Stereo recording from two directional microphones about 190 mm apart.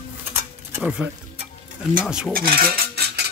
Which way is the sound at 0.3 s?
10° right (ahead or behind).